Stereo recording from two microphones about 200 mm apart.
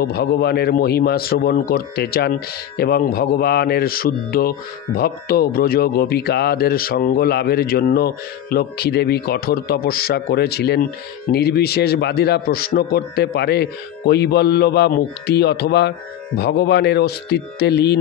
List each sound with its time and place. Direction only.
0.0 s a man's voice: 55° left (ahead or behind)